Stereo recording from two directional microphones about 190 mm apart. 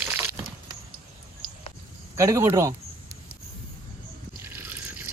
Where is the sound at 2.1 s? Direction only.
15° right (ahead or behind).